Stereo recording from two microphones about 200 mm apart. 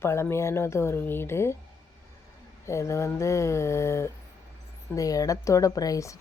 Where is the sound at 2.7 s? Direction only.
15° left (ahead or behind).